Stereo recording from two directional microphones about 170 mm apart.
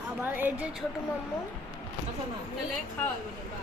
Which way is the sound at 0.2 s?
10° right (ahead or behind).